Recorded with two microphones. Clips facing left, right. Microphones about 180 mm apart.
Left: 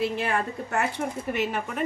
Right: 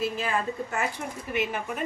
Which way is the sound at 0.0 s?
70° left (ahead or behind).